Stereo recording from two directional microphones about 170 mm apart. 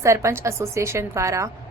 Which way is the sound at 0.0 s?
15° right (ahead or behind).